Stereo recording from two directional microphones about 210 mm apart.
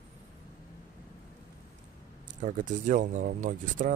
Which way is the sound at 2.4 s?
35° right (ahead or behind).